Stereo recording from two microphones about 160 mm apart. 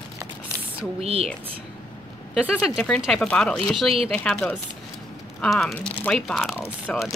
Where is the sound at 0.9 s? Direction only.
40° right (ahead or behind).